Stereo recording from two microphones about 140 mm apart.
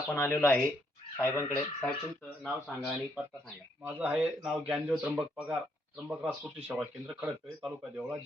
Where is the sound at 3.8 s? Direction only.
10° right (ahead or behind).